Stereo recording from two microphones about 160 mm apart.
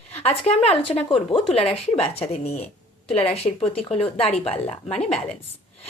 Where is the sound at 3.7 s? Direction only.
40° left (ahead or behind).